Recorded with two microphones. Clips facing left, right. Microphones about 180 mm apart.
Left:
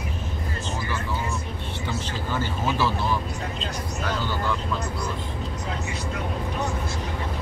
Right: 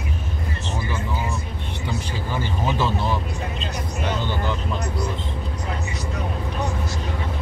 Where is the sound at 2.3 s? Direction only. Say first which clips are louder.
Right 1 dB; 15° right (ahead or behind).